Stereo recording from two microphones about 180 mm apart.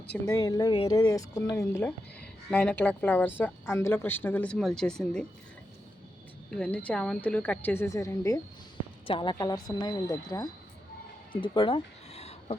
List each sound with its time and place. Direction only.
0.3 s speech: 20° left (ahead or behind); by 5.2 s 5° left (ahead or behind)
6.5 s speech: 5° left (ahead or behind)
9.0 s a woman's voice: 30° left (ahead or behind)
11.3 s a sound: 30° left (ahead or behind)